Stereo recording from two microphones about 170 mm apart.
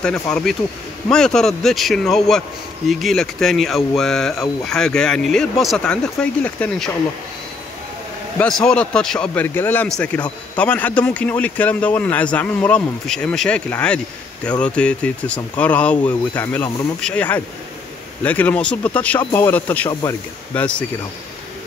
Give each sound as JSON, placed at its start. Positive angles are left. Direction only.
{"t": 0.0, "sound": "speech", "side_deg": 5}
{"t": 8.4, "sound": "speech", "side_deg": 5}
{"t": 19.9, "sound": "speech", "side_deg": 20}
{"t": 20.5, "sound": "speech", "side_deg": 10}